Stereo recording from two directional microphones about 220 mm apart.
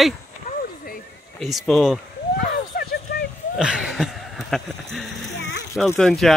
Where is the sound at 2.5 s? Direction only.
45° left (ahead or behind).